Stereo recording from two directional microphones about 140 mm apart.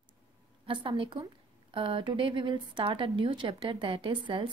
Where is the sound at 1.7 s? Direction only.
40° right (ahead or behind).